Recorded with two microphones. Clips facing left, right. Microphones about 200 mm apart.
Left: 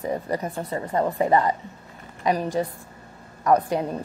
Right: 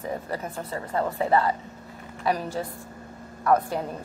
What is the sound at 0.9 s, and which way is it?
A woman's voice, 15° left (ahead or behind).